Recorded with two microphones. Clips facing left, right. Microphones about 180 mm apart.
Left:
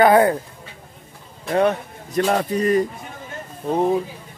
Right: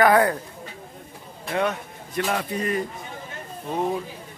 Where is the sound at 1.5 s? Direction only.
40° left (ahead or behind).